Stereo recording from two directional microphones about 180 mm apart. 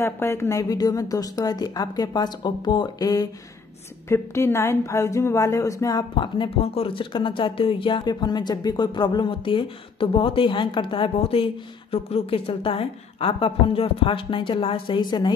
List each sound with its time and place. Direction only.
0.0 s a woman's voice: 15° left (ahead or behind)